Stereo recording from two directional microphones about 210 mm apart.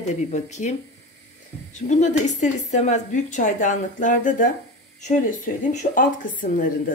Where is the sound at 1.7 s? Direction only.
35° left (ahead or behind).